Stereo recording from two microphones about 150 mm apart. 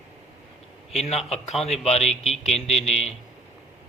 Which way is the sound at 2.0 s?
Centre (ahead or behind).